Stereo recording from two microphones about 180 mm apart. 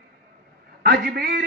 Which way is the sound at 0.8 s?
60° right (ahead or behind).